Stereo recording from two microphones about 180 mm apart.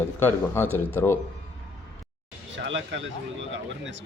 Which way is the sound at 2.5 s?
90° right.